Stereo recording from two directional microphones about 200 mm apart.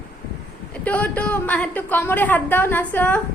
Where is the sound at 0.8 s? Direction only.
5° left (ahead or behind).